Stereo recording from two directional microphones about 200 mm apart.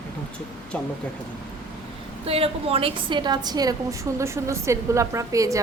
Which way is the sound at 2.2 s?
30° right (ahead or behind).